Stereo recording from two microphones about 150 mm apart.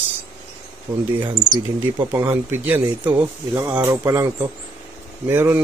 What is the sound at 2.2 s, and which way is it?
Speech, 10° right (ahead or behind).